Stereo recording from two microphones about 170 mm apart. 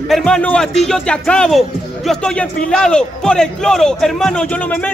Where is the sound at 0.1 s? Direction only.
5° left (ahead or behind).